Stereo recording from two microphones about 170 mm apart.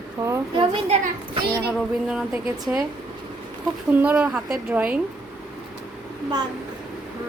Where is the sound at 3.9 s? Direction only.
10° right (ahead or behind).